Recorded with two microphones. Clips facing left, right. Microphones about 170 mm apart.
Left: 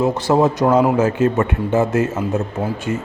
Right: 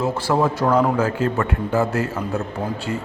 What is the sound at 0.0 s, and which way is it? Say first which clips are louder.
A man's voice: left 4 dB; 20° left (ahead or behind).